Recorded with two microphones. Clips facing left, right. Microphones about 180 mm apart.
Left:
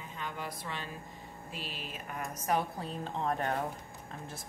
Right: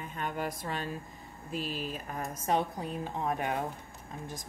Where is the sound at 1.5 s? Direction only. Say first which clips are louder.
Right 9 dB; 40° right (ahead or behind).